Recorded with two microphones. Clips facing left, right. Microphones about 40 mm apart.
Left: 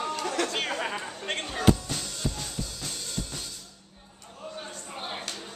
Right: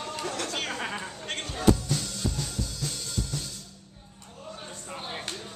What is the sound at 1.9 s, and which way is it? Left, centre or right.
Music, left.